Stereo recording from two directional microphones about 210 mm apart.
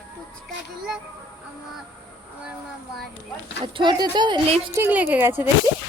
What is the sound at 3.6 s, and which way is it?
Speech, 20° right (ahead or behind).